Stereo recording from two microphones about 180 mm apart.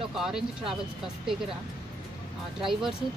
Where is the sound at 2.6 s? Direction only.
Centre (ahead or behind).